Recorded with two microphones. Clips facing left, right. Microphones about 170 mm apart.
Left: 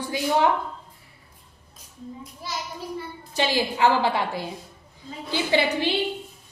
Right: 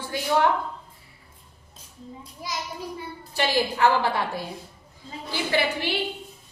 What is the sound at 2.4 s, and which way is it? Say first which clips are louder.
Speech: right 1 dB; 15° right (ahead or behind).